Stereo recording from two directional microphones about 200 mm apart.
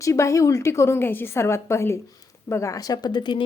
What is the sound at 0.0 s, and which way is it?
A woman's voice, 15° left (ahead or behind).